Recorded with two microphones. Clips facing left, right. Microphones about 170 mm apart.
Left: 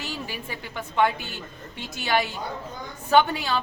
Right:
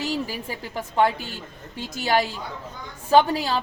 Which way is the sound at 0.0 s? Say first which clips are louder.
Right 7 dB; 40° right (ahead or behind).